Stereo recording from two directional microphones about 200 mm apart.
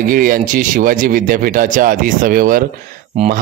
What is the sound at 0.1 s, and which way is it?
A man's voice, 45° right (ahead or behind).